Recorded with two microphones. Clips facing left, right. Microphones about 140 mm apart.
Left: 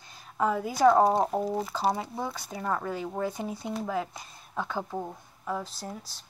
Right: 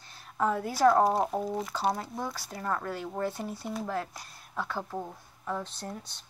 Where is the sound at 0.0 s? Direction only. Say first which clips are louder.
Left 1 dB; centre (ahead or behind).